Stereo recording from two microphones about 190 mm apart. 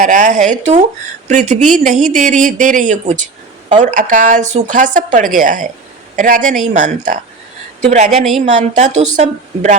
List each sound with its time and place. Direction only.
0.0 s a woman's voice: 40° right (ahead or behind)